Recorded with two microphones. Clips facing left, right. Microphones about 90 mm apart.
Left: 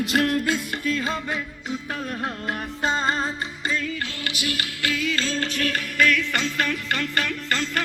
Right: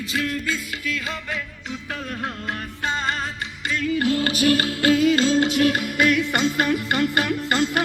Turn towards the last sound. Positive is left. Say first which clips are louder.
# right 5 dB
turn(degrees=-15)  # may be behind; listen again after turning